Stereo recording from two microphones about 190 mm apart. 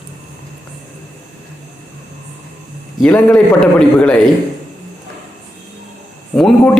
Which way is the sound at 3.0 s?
5° left (ahead or behind).